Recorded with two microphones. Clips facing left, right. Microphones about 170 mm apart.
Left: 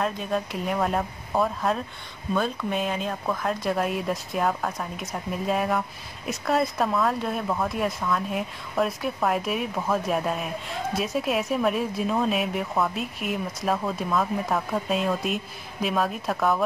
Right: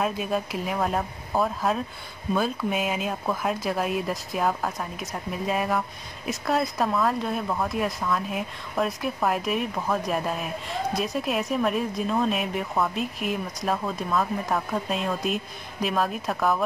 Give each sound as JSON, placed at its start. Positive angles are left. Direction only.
{"t": 0.0, "sound": "speech", "side_deg": -5}